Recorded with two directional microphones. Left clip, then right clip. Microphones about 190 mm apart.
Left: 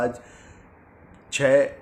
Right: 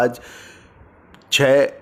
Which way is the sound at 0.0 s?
45° right (ahead or behind).